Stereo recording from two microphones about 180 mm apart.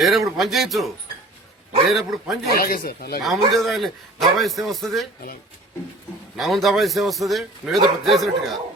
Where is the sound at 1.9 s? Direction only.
Centre (ahead or behind).